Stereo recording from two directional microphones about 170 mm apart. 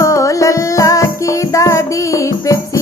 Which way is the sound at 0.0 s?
20° left (ahead or behind).